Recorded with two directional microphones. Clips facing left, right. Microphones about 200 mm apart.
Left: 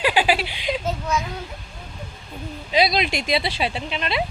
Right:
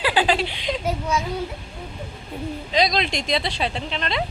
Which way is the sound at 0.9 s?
10° right (ahead or behind).